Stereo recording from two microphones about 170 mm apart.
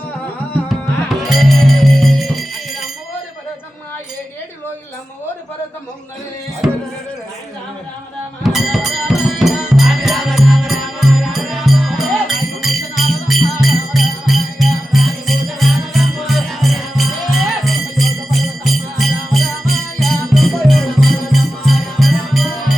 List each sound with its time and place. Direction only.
1.2 s music: centre (ahead or behind)
8.4 s music: centre (ahead or behind)